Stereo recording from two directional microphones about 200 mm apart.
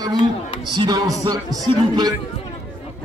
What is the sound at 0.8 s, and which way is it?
Speech, 20° right (ahead or behind).